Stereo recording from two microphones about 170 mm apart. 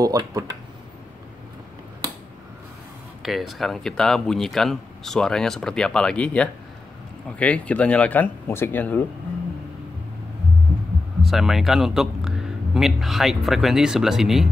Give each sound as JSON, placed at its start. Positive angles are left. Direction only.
{"t": 0.0, "sound": "speech", "side_deg": -20}
{"t": 3.2, "sound": "speech", "side_deg": 0}
{"t": 11.2, "sound": "a man's voice", "side_deg": 0}